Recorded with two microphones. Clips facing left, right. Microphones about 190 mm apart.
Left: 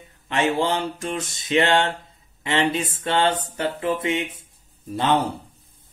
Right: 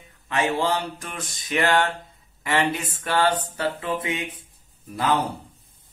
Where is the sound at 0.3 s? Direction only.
25° left (ahead or behind).